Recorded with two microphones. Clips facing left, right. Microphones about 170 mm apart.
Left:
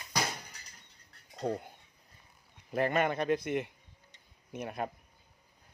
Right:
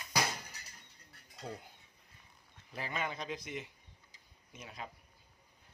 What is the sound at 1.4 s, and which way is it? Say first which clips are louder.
Speech: left 11 dB; 60° left (ahead or behind).